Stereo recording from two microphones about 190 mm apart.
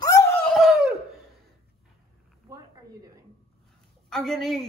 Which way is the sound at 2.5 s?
20° right (ahead or behind).